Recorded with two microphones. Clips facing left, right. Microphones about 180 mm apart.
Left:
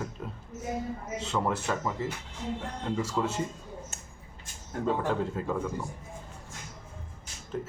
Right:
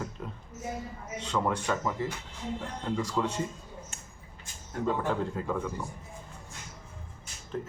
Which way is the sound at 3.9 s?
40° left (ahead or behind).